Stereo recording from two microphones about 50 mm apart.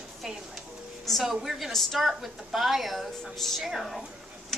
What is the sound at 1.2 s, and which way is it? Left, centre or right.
A woman's voice, centre.